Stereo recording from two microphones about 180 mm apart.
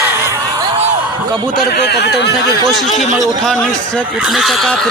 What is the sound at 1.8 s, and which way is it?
Speech, 70° left (ahead or behind).